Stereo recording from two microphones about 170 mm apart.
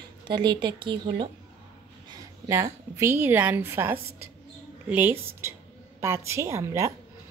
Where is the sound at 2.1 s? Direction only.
15° right (ahead or behind).